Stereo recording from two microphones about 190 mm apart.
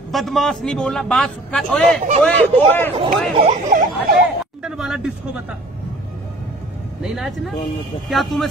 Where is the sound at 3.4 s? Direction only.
35° right (ahead or behind).